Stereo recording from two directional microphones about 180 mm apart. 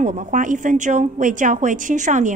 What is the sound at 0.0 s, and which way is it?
Speech, 45° right (ahead or behind).